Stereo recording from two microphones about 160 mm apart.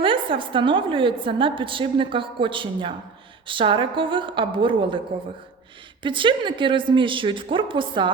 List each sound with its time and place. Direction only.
0.0 s a woman's voice: 30° right (ahead or behind)
6.0 s a woman's voice: 30° right (ahead or behind)